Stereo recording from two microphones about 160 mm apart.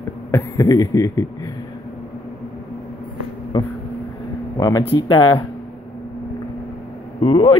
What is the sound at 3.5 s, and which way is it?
Speech, 35° left (ahead or behind).